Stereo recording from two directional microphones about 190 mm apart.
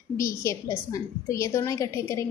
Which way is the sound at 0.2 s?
15° left (ahead or behind).